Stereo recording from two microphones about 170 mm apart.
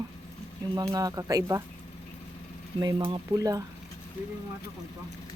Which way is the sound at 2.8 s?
25° right (ahead or behind).